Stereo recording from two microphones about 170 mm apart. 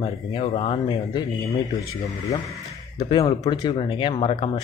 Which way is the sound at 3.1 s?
35° left (ahead or behind).